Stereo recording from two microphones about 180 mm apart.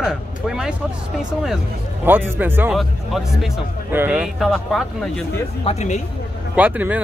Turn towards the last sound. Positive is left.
turn(degrees=-10)  # may be behind; listen again after turning